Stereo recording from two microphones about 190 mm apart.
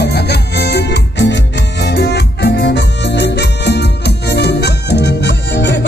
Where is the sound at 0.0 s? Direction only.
60° left (ahead or behind).